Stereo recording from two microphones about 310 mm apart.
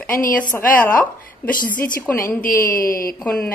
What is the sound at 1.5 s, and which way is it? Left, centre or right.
Speech, left.